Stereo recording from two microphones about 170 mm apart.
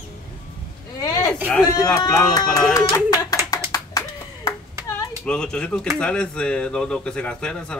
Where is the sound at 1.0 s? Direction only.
20° left (ahead or behind).